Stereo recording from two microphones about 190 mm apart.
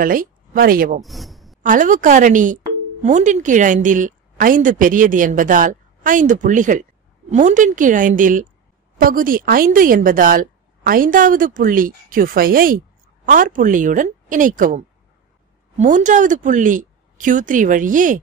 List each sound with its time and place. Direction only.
0.0 s speech: 45° right (ahead or behind)
1.0 s a sound: centre (ahead or behind)
1.6 s speech: 45° right (ahead or behind)